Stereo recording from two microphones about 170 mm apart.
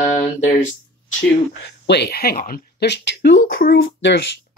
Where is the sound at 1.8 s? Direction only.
80° left.